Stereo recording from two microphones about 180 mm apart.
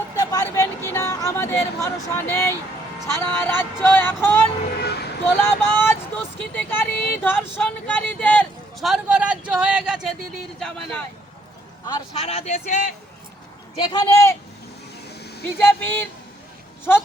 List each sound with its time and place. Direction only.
0.2 s speech: 20° left (ahead or behind)
4.8 s speech: 65° left (ahead or behind)
5.4 s speech: 10° left (ahead or behind)
12.1 s speech: 35° left (ahead or behind)
13.7 s speech: 25° left (ahead or behind)
15.2 s vehicle: 65° left (ahead or behind)
15.5 s speech: 10° left (ahead or behind)